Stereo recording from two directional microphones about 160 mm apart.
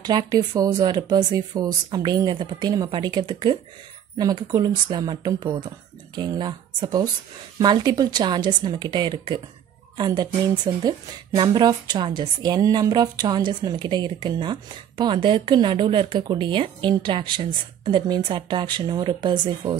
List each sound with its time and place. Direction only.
0.0 s speech: 25° right (ahead or behind)